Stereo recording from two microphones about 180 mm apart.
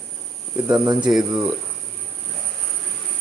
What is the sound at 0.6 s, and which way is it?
Speech, 20° right (ahead or behind).